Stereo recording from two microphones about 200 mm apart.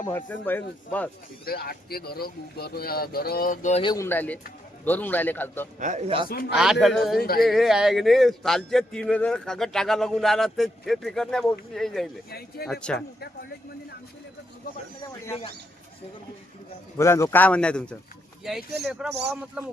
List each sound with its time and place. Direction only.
0.0 s speech: 10° left (ahead or behind)
1.5 s speech: 50° left (ahead or behind)
3.8 s speech: 15° left (ahead or behind)
5.8 s speech: 35° right (ahead or behind)
6.2 s speech: 50° left (ahead or behind)
6.6 s a man's voice: centre (ahead or behind)
7.2 s speech: 50° left (ahead or behind)
7.4 s a man's voice: centre (ahead or behind)
12.3 s speech: 50° left (ahead or behind)
12.6 s a man's voice: centre (ahead or behind)
17.0 s a man's voice: 15° left (ahead or behind); by 19.6 s 10° right (ahead or behind)